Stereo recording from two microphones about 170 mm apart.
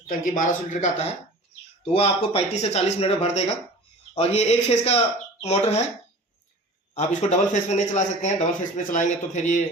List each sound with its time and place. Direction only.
0.1 s a man's voice: 50° left (ahead or behind)
6.9 s a man's voice: 45° left (ahead or behind)